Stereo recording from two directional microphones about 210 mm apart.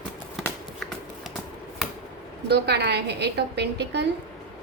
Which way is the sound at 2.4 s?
50° right (ahead or behind).